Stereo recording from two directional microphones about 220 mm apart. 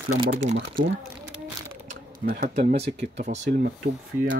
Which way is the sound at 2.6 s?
30° right (ahead or behind).